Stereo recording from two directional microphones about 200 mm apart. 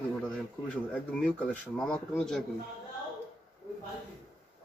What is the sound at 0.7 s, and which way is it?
Speech, 5° left (ahead or behind).